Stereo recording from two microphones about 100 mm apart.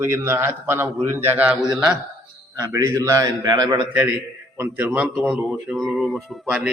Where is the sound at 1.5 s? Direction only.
10° right (ahead or behind).